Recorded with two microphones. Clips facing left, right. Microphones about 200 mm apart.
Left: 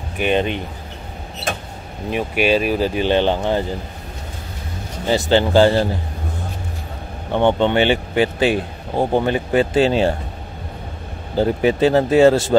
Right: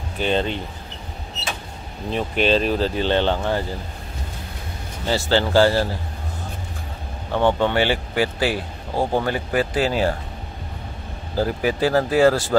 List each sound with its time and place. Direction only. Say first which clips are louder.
0.2 s speech: left 3 dB; 15° left (ahead or behind)
2.0 s speech: left 2 dB; 10° left (ahead or behind)
5.0 s a man's voice: left 4 dB; 20° left (ahead or behind)
7.3 s a man's voice: left 3 dB; 20° left (ahead or behind)
11.3 s a man's voice: left 5 dB; 25° left (ahead or behind)